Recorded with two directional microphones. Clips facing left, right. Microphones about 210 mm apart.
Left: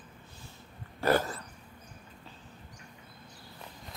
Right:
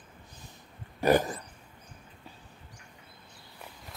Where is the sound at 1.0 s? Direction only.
15° right (ahead or behind).